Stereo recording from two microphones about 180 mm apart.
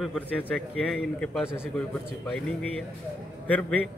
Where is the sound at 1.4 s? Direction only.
15° left (ahead or behind).